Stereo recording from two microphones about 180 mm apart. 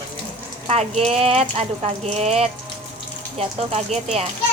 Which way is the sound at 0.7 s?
35° right (ahead or behind).